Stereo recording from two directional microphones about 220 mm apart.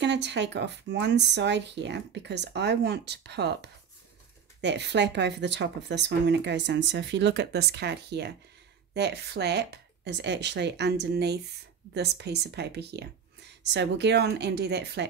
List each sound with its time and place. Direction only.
0.0 s speech: 50° right (ahead or behind)